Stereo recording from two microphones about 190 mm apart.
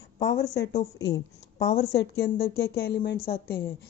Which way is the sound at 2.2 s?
55° left (ahead or behind).